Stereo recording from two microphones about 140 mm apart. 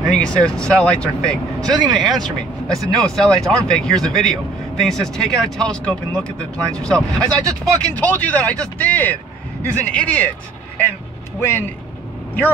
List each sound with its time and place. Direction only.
0.0 s speech: 5° left (ahead or behind)
11.3 s speech: 15° left (ahead or behind)